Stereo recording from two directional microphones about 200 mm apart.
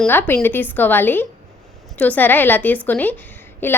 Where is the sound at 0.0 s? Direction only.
10° left (ahead or behind).